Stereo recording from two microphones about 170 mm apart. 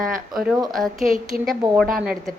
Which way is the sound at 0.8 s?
Centre (ahead or behind).